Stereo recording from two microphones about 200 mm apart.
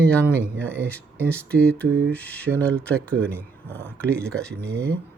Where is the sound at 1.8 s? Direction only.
50° right (ahead or behind).